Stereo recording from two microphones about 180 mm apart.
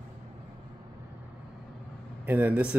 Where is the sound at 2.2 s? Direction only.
10° right (ahead or behind).